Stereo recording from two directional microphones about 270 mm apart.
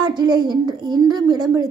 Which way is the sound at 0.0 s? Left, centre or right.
Centre.